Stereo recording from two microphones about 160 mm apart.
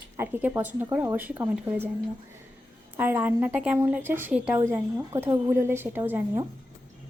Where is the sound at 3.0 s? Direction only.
15° right (ahead or behind).